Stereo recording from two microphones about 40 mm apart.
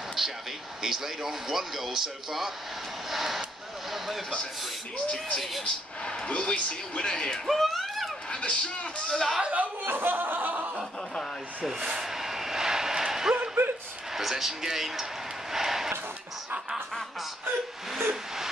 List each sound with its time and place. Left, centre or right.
0.2 s speech: centre
4.9 s speech: centre
6.3 s speech: left
7.4 s a sound: centre
8.3 s speech: left
9.1 s speech: centre
9.8 s chuckle: right
11.6 s speech: centre
12.0 s vehicle: centre
13.6 s a sound: right
14.1 s speech: centre
15.5 s a sound: centre